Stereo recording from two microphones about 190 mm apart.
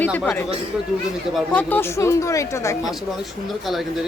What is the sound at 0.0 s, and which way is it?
Speech, 10° left (ahead or behind).